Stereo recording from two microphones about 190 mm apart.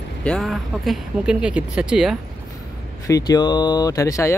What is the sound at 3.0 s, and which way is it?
Speech, 20° left (ahead or behind).